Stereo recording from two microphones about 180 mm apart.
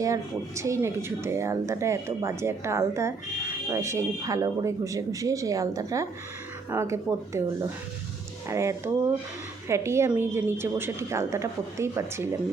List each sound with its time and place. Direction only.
0.0 s speech: 15° right (ahead or behind)